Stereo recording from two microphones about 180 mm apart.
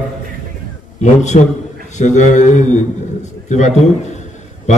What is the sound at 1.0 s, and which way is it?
A man's voice, 40° left (ahead or behind).